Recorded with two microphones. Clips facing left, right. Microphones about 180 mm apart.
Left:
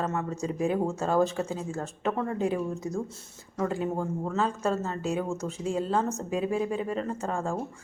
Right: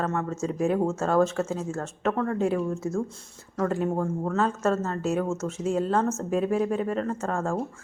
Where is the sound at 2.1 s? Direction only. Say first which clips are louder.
Right 3 dB; 15° left (ahead or behind).